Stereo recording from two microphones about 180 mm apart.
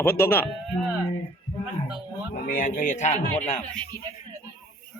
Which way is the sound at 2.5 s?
50° left (ahead or behind).